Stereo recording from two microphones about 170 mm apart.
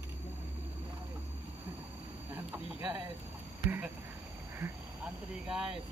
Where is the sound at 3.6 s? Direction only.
10° right (ahead or behind).